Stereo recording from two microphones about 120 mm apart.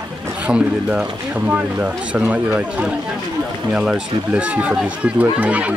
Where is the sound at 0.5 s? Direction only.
10° right (ahead or behind).